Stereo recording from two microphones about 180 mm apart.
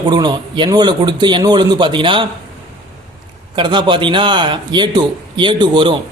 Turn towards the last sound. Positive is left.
turn(degrees=-25)  # may be behind; listen again after turning